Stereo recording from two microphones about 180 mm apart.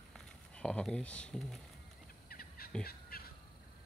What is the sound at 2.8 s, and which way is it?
Crow, 60° left (ahead or behind).